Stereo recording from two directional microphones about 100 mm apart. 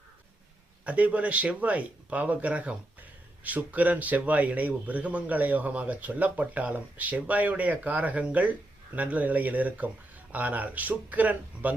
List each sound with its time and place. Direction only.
0.9 s speech: 15° right (ahead or behind)